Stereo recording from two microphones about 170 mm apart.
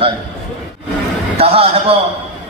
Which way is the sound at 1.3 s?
35° right (ahead or behind).